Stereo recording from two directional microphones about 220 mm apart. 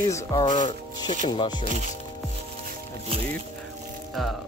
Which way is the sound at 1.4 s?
20° left (ahead or behind).